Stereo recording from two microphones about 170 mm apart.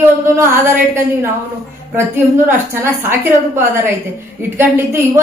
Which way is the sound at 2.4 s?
15° right (ahead or behind).